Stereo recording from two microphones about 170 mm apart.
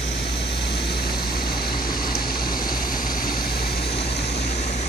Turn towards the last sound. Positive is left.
turn(degrees=40)  # may be behind; listen again after turning